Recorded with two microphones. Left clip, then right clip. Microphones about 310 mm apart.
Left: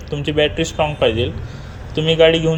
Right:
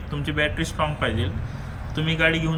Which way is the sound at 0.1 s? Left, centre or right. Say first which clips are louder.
Left 7 dB; centre.